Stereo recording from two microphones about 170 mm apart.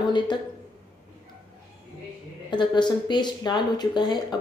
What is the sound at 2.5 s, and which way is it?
Speech, 25° left (ahead or behind).